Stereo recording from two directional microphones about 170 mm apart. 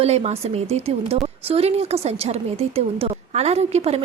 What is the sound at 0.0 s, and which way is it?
A woman's voice, 40° right (ahead or behind).